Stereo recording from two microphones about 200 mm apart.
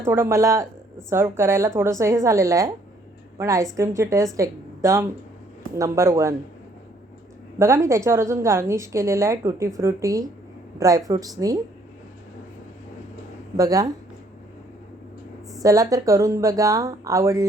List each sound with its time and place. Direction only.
0.0 s a woman's voice: 15° right (ahead or behind)
7.6 s a woman's voice: 15° right (ahead or behind)
13.6 s speech: 20° right (ahead or behind)
15.6 s a woman's voice: 15° right (ahead or behind)